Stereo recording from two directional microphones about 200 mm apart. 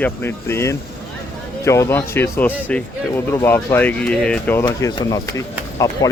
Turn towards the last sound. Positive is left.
turn(degrees=15)  # may be behind; listen again after turning